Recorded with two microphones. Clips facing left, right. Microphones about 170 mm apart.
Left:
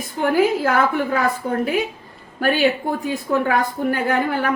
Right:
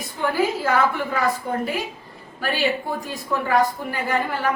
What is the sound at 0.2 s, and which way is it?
A woman's voice, 50° left (ahead or behind).